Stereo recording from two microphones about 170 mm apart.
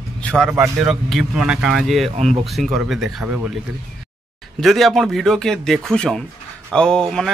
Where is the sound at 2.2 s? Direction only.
40° right (ahead or behind).